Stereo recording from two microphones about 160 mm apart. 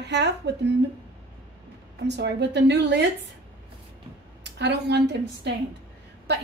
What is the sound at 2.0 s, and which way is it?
A woman's voice, 90° right.